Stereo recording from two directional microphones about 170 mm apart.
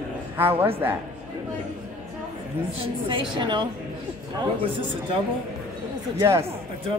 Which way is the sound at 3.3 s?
30° right (ahead or behind).